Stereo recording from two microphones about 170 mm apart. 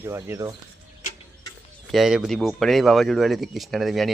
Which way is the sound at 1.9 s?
Centre (ahead or behind).